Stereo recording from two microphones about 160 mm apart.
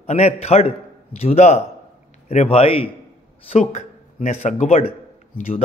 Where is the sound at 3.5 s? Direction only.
45° left (ahead or behind).